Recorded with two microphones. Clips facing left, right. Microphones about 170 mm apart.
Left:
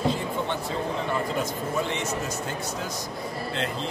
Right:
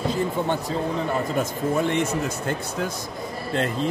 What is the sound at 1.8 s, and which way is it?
Speech, 55° right (ahead or behind).